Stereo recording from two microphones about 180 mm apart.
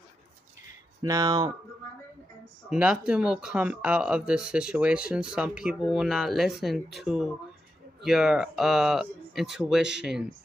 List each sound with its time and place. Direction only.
1.0 s speech: 20° right (ahead or behind)
2.7 s speech: 5° right (ahead or behind)